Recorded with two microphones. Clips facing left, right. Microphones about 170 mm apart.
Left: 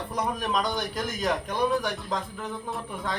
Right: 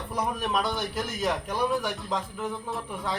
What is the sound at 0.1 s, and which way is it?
A man's voice, 5° right (ahead or behind).